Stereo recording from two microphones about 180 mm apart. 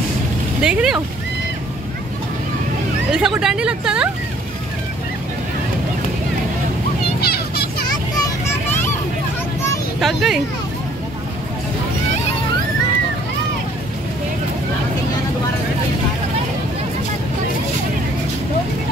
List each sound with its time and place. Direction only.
0.6 s speech: 5° right (ahead or behind)
3.1 s speech: 5° right (ahead or behind)
7.2 s children playing: 60° left (ahead or behind)
8.2 s a sound: 10° left (ahead or behind)
9.9 s speech: centre (ahead or behind)